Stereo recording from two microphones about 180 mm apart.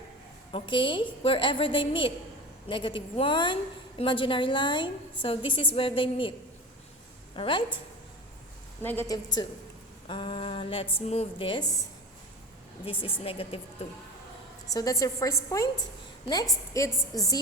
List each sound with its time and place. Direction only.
0.5 s a woman's voice: 25° left (ahead or behind)
7.3 s a woman's voice: 30° left (ahead or behind)
8.8 s a woman's voice: 10° left (ahead or behind)
12.8 s a woman's voice: 30° left (ahead or behind)
14.7 s a woman's voice: 20° left (ahead or behind)
16.7 s a woman's voice: 15° left (ahead or behind)